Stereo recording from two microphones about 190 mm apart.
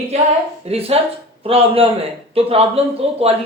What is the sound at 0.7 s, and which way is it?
A woman's voice, 30° right (ahead or behind).